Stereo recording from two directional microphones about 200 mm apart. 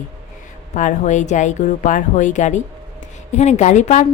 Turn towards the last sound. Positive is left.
turn(degrees=35)  # may be behind; listen again after turning